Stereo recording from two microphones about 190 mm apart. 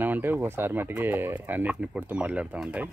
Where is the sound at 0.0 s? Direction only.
10° right (ahead or behind).